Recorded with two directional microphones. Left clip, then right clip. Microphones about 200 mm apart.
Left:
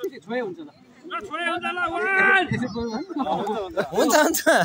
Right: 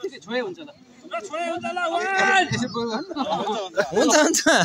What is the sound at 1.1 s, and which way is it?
A man's voice, 45° right (ahead or behind).